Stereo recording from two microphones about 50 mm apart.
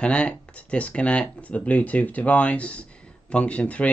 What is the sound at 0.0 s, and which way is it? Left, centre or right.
Speech, left.